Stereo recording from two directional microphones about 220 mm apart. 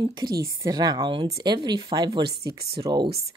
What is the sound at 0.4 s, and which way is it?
Speech, 15° right (ahead or behind).